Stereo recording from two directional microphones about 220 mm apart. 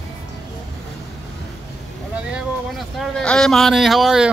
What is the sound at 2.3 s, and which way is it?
Speech, centre (ahead or behind).